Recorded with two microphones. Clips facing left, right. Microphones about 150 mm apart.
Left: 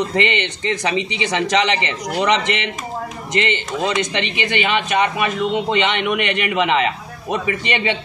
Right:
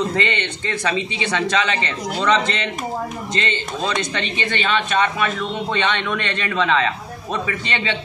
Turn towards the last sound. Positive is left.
turn(degrees=15)  # may be behind; listen again after turning